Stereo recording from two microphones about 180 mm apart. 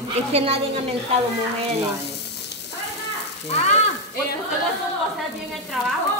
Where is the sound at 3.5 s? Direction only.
35° left (ahead or behind).